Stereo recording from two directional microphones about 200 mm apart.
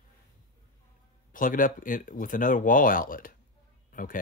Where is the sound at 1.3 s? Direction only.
40° left (ahead or behind).